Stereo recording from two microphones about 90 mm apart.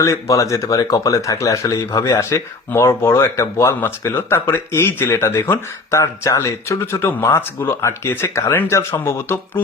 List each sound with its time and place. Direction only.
0.0 s speech: 35° left (ahead or behind)